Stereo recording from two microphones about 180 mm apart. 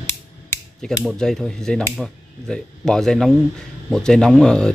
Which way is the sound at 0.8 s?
Centre (ahead or behind).